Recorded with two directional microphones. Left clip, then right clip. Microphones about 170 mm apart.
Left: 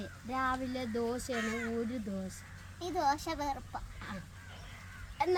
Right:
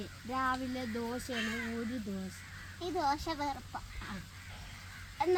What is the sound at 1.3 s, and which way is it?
Speech, 30° left (ahead or behind).